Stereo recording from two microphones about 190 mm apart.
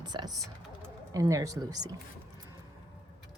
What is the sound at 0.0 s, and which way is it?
Speech, 20° right (ahead or behind).